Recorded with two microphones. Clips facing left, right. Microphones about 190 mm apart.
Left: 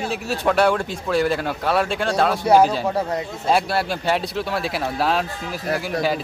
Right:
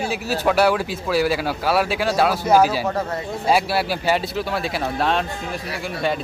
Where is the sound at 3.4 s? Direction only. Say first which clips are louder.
Right 1 dB; 5° right (ahead or behind).